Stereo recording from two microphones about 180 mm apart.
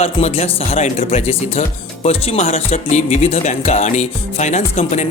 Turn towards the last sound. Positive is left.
turn(degrees=40)  # may be behind; listen again after turning